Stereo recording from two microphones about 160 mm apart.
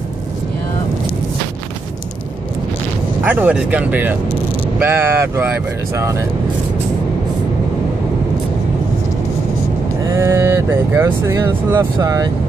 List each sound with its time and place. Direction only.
3.3 s speech: 10° right (ahead or behind)
10.1 s speech: 20° right (ahead or behind)